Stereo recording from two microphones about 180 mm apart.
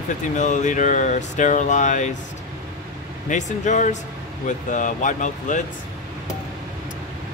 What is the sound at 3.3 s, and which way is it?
Speech, 40° left (ahead or behind).